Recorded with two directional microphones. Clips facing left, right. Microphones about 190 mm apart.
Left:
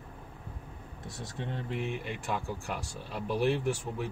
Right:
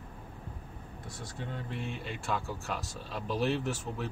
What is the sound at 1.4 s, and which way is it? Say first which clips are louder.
Speech: left 4 dB; 15° left (ahead or behind).